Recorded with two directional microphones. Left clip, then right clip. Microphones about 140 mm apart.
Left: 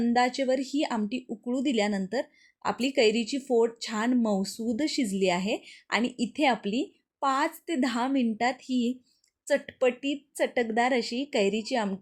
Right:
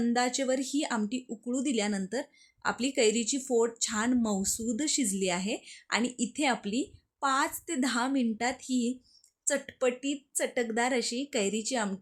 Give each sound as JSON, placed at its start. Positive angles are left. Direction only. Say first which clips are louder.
{"t": 0.1, "sound": "speech", "louder": "left 5 dB", "side_deg": 20}